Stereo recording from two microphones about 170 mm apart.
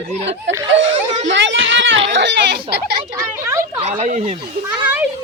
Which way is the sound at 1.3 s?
90° right.